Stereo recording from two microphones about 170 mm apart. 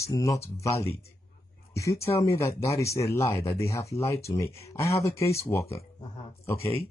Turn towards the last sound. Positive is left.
turn(degrees=15)  # may be behind; listen again after turning